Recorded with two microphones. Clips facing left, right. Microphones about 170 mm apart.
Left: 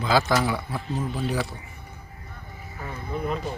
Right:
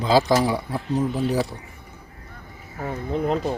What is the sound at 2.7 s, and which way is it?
Speech, 45° right (ahead or behind).